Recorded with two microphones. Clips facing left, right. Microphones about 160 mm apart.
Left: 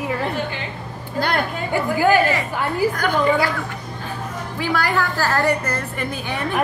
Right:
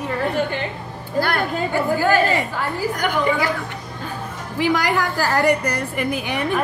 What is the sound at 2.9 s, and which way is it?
Speech, 15° right (ahead or behind).